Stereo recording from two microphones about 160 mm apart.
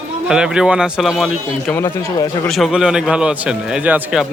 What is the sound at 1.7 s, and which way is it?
Speech, 20° left (ahead or behind).